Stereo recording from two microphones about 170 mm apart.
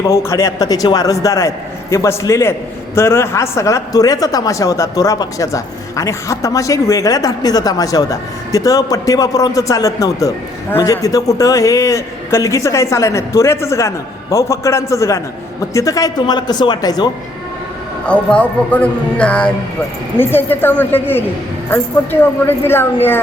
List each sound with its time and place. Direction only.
0.1 s a man's voice: 15° left (ahead or behind)
18.0 s speech: 5° left (ahead or behind)